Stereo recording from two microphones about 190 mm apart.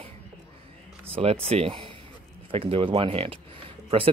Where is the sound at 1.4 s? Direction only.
30° right (ahead or behind).